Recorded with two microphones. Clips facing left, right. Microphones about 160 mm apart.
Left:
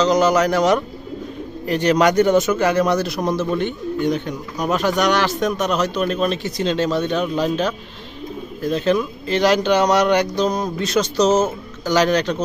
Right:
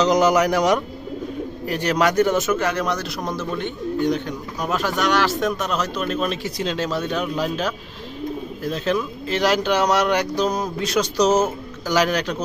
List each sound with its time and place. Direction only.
0.0 s speech: 15° right (ahead or behind)